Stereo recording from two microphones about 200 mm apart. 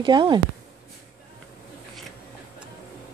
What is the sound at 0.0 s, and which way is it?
Speech, 25° right (ahead or behind).